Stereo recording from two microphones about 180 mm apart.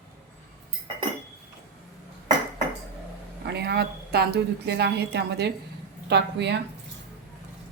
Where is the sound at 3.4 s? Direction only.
65° right (ahead or behind).